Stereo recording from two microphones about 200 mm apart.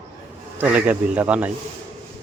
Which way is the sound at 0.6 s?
5° right (ahead or behind).